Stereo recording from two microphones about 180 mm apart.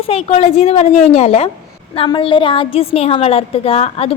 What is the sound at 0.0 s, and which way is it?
A woman's voice, 35° left (ahead or behind).